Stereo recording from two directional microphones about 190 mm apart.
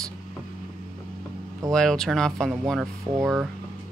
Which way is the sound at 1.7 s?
5° left (ahead or behind).